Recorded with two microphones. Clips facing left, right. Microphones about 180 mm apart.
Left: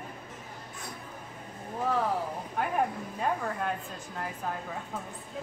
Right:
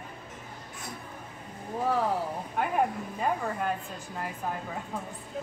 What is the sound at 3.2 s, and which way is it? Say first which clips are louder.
A woman's voice: right 1 dB; 5° right (ahead or behind).